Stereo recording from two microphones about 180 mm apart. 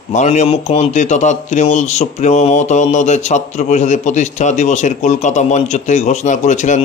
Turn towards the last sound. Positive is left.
turn(degrees=45)  # may be behind; listen again after turning